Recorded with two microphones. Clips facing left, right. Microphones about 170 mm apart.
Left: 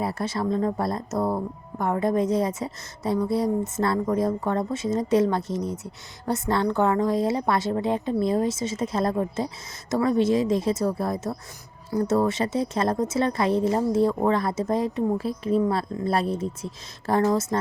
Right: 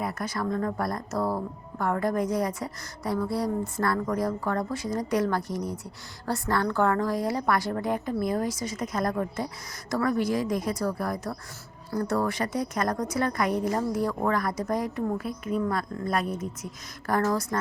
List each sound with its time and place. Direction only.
0.0 s a woman's voice: 30° left (ahead or behind)